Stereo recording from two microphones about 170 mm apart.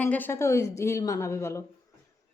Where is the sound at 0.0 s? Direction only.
10° left (ahead or behind).